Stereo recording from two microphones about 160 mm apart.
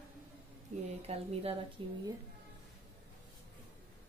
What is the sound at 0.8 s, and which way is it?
A woman's voice, 40° right (ahead or behind).